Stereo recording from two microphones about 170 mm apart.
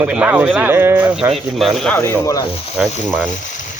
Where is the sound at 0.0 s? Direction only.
10° right (ahead or behind); by 2.5 s 20° left (ahead or behind).